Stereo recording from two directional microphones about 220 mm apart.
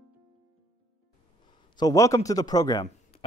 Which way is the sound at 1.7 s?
15° left (ahead or behind).